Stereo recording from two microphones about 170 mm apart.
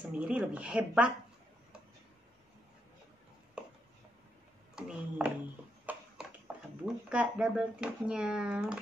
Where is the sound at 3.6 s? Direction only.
5° right (ahead or behind).